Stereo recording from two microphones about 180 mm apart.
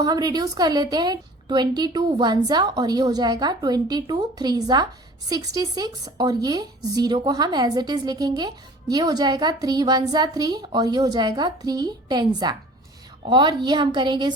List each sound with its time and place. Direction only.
0.0 s speech: 20° right (ahead or behind)